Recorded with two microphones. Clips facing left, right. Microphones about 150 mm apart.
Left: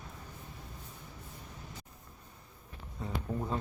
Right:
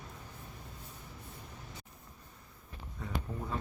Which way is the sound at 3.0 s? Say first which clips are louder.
Left 3 dB; 25° left (ahead or behind).